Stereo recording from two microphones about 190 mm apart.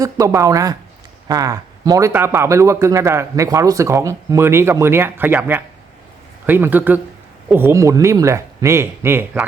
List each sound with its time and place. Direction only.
0.0 s speech: 20° right (ahead or behind)